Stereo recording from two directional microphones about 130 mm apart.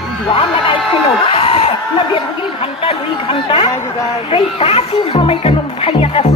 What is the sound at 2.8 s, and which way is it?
Speech, 45° left (ahead or behind).